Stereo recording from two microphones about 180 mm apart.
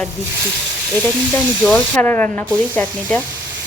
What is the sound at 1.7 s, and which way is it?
Speech, 10° left (ahead or behind).